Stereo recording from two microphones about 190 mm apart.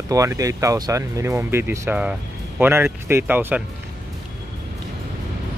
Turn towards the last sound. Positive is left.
turn(degrees=-10)  # may be behind; listen again after turning